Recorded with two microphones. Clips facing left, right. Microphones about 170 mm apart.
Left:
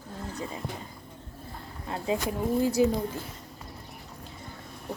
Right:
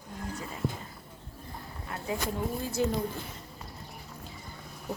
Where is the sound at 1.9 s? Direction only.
25° left (ahead or behind).